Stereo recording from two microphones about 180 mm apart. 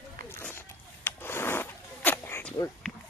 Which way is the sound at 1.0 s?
10° left (ahead or behind).